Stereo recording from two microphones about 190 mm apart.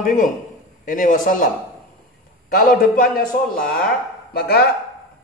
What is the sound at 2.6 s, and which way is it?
A man's voice, 50° left (ahead or behind).